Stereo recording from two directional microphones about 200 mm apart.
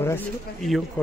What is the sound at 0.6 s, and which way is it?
Speech, centre (ahead or behind).